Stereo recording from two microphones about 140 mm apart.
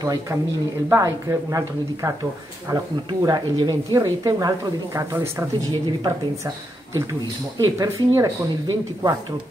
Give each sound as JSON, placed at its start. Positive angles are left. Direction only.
{"t": 0.0, "sound": "a woman's voice", "side_deg": -25}